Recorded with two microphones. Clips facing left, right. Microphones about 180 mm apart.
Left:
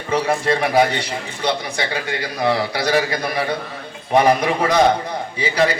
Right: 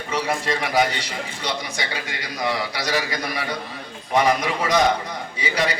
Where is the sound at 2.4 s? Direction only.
30° left (ahead or behind).